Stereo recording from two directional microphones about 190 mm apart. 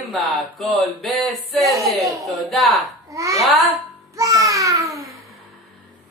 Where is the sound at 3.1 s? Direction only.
15° right (ahead or behind).